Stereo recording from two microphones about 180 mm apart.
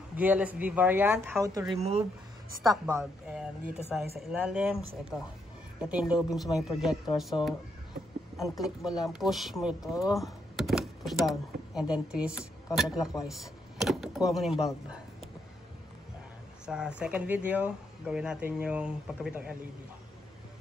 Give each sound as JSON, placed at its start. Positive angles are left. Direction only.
{"t": 0.1, "sound": "a woman's voice", "side_deg": -10}
{"t": 2.7, "sound": "speech", "side_deg": -15}
{"t": 3.3, "sound": "speech", "side_deg": -5}
{"t": 5.8, "sound": "speech", "side_deg": -5}
{"t": 16.6, "sound": "speech", "side_deg": -5}